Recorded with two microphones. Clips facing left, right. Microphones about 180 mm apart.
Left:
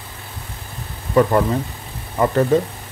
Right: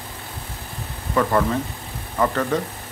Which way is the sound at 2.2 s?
25° left (ahead or behind).